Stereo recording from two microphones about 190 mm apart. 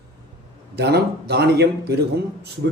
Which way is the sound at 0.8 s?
60° right (ahead or behind).